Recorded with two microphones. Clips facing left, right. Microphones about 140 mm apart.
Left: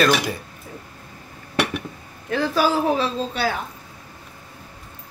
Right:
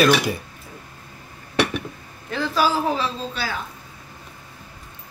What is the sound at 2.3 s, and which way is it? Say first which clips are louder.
A woman's voice: left 2 dB; 55° left (ahead or behind).